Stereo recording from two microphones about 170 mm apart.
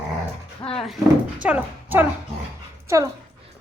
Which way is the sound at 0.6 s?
30° left (ahead or behind).